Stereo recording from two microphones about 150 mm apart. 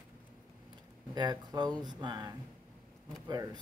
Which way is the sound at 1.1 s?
25° right (ahead or behind).